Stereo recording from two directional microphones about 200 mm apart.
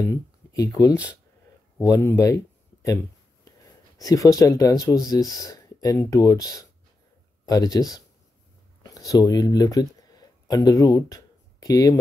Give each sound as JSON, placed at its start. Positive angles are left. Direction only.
{"t": 0.0, "sound": "speech", "side_deg": 15}
{"t": 4.0, "sound": "speech", "side_deg": 15}